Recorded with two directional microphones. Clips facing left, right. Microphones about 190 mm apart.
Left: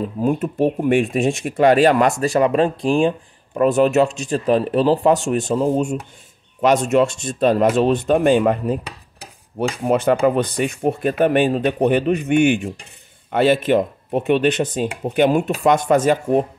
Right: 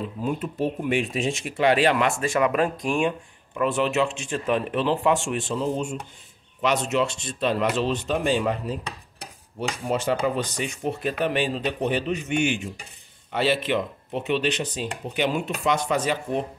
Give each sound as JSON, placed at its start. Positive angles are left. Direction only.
{"t": 0.0, "sound": "speech", "side_deg": 45}